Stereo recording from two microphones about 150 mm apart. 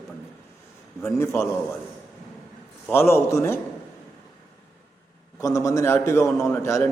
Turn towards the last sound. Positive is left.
turn(degrees=20)  # may be behind; listen again after turning